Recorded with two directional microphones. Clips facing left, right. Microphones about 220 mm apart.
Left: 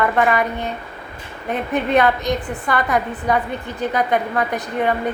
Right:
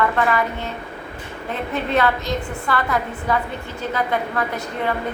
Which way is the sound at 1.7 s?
20° left (ahead or behind).